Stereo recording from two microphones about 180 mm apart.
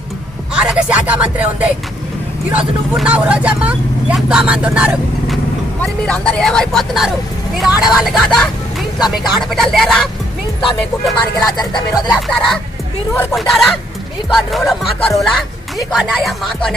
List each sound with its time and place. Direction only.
0.6 s speech: 5° right (ahead or behind)
3.0 s speech: 5° right (ahead or behind)
5.8 s speech: 5° left (ahead or behind)
11.4 s music: 20° left (ahead or behind)
11.9 s speech: centre (ahead or behind)